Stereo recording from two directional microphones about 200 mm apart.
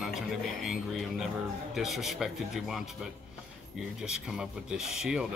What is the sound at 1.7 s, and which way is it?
Speech, centre (ahead or behind).